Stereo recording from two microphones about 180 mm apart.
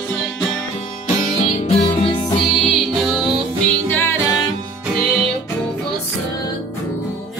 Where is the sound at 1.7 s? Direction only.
30° left (ahead or behind).